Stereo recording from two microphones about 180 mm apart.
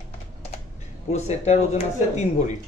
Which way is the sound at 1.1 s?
40° left (ahead or behind).